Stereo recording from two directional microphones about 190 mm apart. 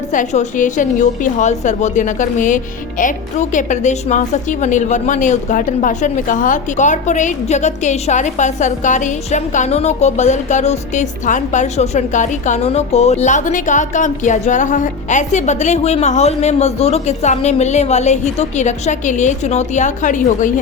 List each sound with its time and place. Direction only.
0.1 s a woman's voice: 40° left (ahead or behind)